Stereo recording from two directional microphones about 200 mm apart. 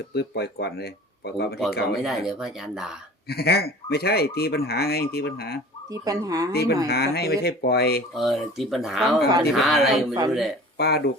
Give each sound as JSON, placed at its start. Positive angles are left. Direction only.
{"t": 0.1, "sound": "speech", "side_deg": 55}
{"t": 2.0, "sound": "speech", "side_deg": 0}
{"t": 3.2, "sound": "speech", "side_deg": 50}
{"t": 5.9, "sound": "speech", "side_deg": -20}
{"t": 6.5, "sound": "speech", "side_deg": 50}
{"t": 8.1, "sound": "speech", "side_deg": 0}
{"t": 10.8, "sound": "speech", "side_deg": 55}